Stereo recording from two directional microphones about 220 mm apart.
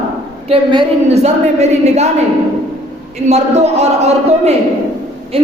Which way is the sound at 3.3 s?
30° right (ahead or behind).